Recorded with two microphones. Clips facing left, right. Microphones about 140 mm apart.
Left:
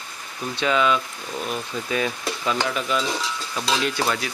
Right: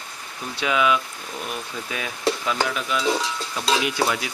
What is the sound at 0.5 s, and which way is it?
Stir, 5° right (ahead or behind).